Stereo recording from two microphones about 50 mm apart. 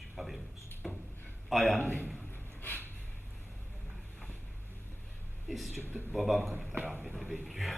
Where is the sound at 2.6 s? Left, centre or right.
Left.